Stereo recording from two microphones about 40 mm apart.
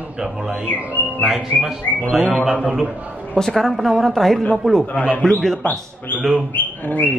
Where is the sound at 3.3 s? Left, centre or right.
Centre.